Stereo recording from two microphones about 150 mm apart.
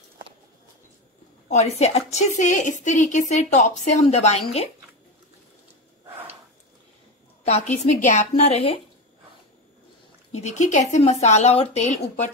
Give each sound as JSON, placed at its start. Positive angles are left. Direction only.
{"t": 1.5, "sound": "a woman's voice", "side_deg": 45}
{"t": 7.4, "sound": "a woman's voice", "side_deg": 45}
{"t": 10.3, "sound": "a woman's voice", "side_deg": 50}